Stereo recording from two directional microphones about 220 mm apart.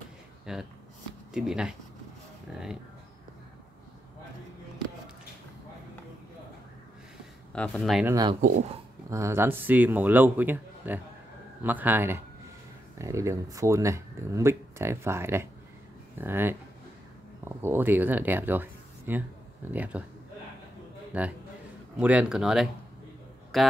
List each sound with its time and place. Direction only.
0.5 s speech: 5° right (ahead or behind)
7.5 s speech: 5° left (ahead or behind)
8.1 s speech: 20° right (ahead or behind)
8.4 s speech: 30° right (ahead or behind)
9.1 s speech: 15° right (ahead or behind)
21.1 s speech: 5° right (ahead or behind)